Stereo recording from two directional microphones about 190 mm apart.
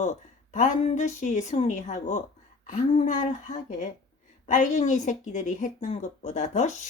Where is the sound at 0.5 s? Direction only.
35° left (ahead or behind).